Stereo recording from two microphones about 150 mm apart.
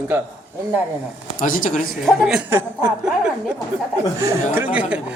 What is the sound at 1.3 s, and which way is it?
Speech, 65° left (ahead or behind).